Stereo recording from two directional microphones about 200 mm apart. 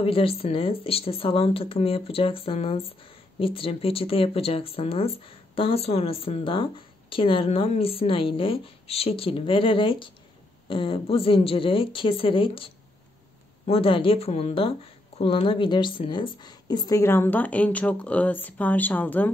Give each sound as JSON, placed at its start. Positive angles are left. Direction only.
{"t": 0.0, "sound": "speech", "side_deg": 30}